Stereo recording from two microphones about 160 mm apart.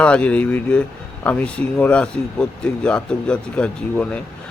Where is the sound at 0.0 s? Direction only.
5° left (ahead or behind).